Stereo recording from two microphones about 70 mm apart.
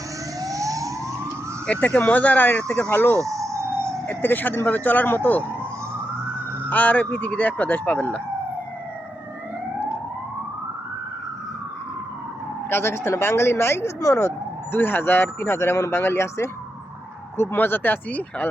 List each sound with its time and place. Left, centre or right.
0.3 s fire engine: right
1.6 s speech: centre
3.2 s emergency vehicle: right
4.0 s speech: left
6.7 s speech: left
12.7 s speech: left
14.8 s speech: left